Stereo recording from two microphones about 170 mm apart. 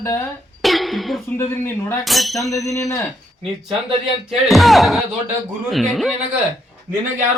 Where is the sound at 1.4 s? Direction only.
15° left (ahead or behind).